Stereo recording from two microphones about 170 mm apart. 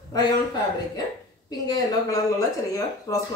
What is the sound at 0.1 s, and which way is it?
Speech, 25° left (ahead or behind).